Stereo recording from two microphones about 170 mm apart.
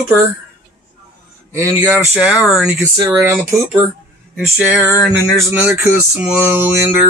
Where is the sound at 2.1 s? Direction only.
5° right (ahead or behind).